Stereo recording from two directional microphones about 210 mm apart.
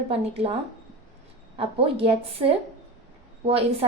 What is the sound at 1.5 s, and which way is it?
A woman's voice, 25° right (ahead or behind).